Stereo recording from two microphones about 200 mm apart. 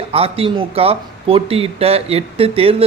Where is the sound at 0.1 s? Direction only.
30° right (ahead or behind).